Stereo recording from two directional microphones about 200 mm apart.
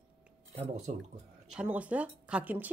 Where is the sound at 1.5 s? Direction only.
5° right (ahead or behind).